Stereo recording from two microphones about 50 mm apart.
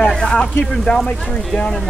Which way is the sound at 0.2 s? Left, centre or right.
Centre.